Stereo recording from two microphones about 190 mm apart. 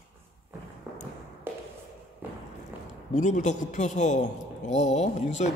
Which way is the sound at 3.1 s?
40° left (ahead or behind).